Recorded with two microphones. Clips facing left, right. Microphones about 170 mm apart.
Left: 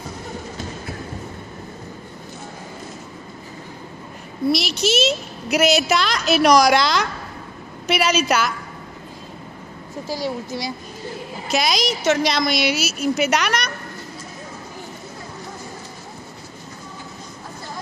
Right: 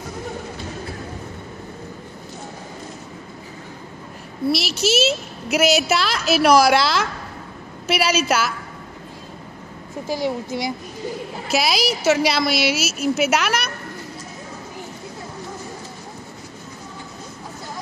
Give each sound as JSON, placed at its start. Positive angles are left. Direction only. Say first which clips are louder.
{"t": 4.5, "sound": "a woman's voice", "louder": "left 1 dB", "side_deg": -5}
{"t": 10.0, "sound": "speech", "louder": "right 3 dB", "side_deg": -20}
{"t": 11.5, "sound": "a woman's voice", "louder": "even", "side_deg": -5}